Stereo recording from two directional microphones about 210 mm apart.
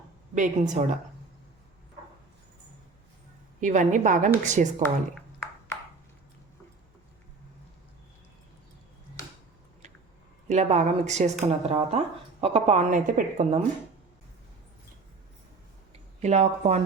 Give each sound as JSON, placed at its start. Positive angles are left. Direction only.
{"t": 0.3, "sound": "a woman's voice", "side_deg": -35}
{"t": 3.6, "sound": "a woman's voice", "side_deg": -35}
{"t": 4.8, "sound": "speech", "side_deg": 0}
{"t": 10.5, "sound": "a woman's voice", "side_deg": -30}
{"t": 16.2, "sound": "a woman's voice", "side_deg": -30}